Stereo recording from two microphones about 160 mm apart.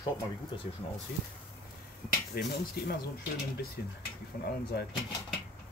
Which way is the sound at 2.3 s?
75° left (ahead or behind).